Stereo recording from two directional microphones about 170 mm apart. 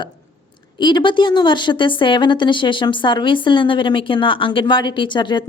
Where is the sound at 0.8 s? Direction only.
25° left (ahead or behind).